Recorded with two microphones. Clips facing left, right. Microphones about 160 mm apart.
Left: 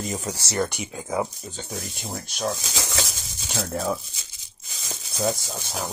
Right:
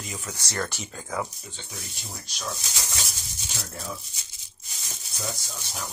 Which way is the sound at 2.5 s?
90° left.